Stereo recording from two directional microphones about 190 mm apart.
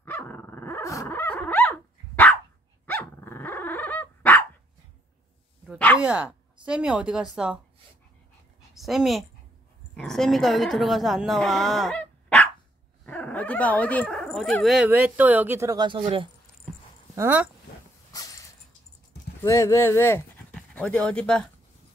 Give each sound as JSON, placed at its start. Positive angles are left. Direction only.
{"t": 0.0, "sound": "dog", "side_deg": 10}
{"t": 5.9, "sound": "speech", "side_deg": -5}
{"t": 8.7, "sound": "speech", "side_deg": 0}
{"t": 17.1, "sound": "speech", "side_deg": -10}
{"t": 18.1, "sound": "a sound", "side_deg": 20}
{"t": 19.4, "sound": "speech", "side_deg": 15}